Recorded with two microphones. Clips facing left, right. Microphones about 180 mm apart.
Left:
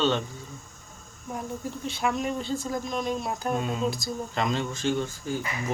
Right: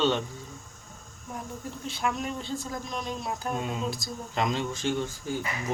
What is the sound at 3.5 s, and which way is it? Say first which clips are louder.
Speech: left 3 dB; 15° right (ahead or behind).